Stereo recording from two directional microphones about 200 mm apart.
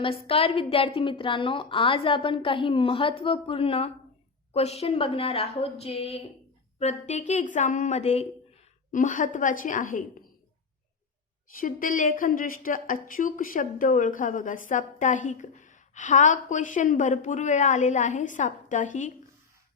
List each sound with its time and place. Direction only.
0.0 s a woman's voice: 30° left (ahead or behind)
11.6 s speech: 45° left (ahead or behind)